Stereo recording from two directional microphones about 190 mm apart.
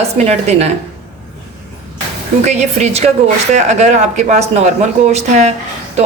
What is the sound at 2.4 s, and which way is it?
Speech, 35° right (ahead or behind).